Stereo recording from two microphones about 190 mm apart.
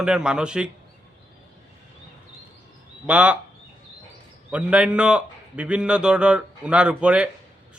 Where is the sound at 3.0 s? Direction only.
5° right (ahead or behind).